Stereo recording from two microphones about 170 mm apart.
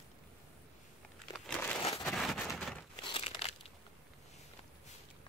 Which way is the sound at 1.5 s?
10° left (ahead or behind).